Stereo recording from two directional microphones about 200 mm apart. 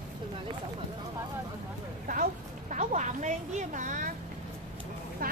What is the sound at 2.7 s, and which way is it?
A woman's voice, 35° right (ahead or behind).